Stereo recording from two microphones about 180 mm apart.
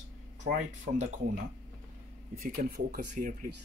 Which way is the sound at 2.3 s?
55° right (ahead or behind).